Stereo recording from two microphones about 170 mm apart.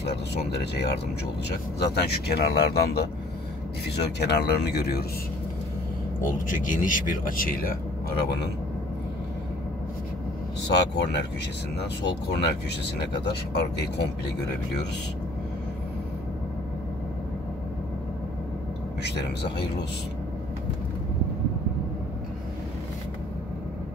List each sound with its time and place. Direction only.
1.8 s speech: 70° left (ahead or behind)
6.3 s speech: 50° left (ahead or behind)
10.7 s speech: 80° left
19.0 s speech: 85° left